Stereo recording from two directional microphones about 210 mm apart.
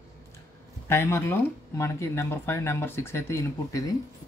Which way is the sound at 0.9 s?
10° left (ahead or behind).